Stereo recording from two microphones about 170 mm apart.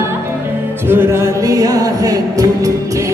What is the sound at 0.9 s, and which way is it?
Music, 15° right (ahead or behind).